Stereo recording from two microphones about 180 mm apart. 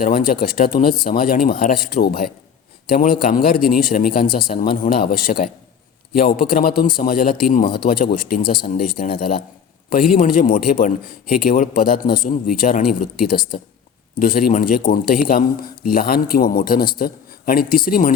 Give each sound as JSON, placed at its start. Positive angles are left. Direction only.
{"t": 0.0, "sound": "a man's voice", "side_deg": 55}